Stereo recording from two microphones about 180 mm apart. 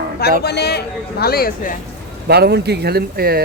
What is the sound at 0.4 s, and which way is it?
Speech, 65° left (ahead or behind).